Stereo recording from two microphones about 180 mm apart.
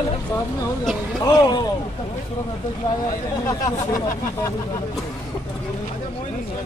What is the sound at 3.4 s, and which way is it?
Speech, 20° left (ahead or behind).